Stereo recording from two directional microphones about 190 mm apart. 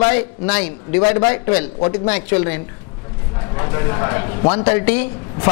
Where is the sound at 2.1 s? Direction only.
15° left (ahead or behind).